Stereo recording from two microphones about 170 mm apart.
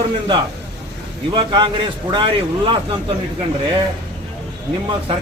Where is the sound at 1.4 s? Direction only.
25° right (ahead or behind).